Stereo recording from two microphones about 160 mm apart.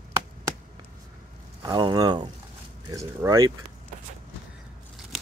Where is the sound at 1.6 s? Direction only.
30° right (ahead or behind).